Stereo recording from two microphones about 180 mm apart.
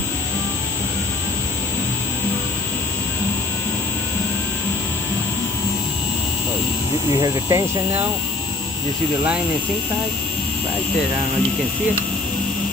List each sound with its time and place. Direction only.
7.2 s speech: 20° right (ahead or behind)